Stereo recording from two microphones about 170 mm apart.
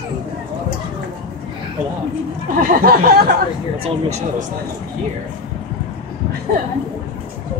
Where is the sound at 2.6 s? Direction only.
55° right (ahead or behind).